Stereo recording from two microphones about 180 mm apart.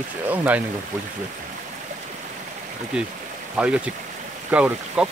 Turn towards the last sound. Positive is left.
turn(degrees=-5)  # may be behind; listen again after turning